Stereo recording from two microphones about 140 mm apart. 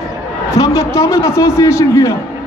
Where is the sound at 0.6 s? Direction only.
20° left (ahead or behind).